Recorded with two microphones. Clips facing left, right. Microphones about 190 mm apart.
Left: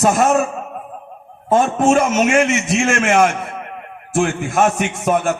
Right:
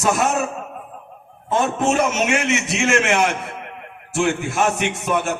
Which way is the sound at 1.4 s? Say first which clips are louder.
Left 5 dB; 50° left (ahead or behind).